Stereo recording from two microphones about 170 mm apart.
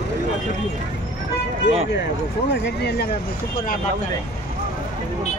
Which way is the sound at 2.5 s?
70° left (ahead or behind).